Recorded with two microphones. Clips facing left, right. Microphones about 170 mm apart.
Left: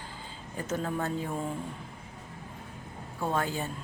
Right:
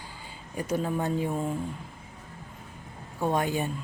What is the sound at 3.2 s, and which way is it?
Speech, 15° right (ahead or behind).